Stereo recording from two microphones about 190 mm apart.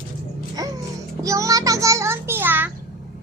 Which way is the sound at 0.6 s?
20° right (ahead or behind).